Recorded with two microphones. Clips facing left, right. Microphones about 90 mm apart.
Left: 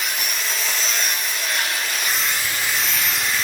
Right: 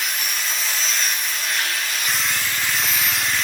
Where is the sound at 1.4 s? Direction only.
Centre (ahead or behind).